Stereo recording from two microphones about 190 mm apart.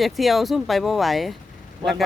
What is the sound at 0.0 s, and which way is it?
Speech, centre (ahead or behind).